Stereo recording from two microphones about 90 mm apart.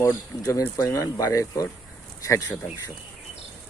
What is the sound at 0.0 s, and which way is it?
Speech, 40° left (ahead or behind).